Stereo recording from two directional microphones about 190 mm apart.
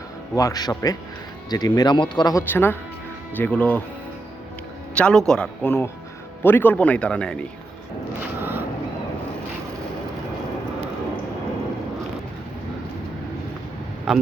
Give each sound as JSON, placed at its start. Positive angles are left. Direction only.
{"t": 0.3, "sound": "speech", "side_deg": 20}
{"t": 4.9, "sound": "speech", "side_deg": 5}
{"t": 8.4, "sound": "a sound", "side_deg": -10}
{"t": 14.1, "sound": "speech", "side_deg": -5}